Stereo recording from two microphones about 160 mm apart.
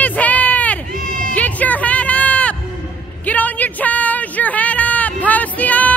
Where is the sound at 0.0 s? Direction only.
10° left (ahead or behind).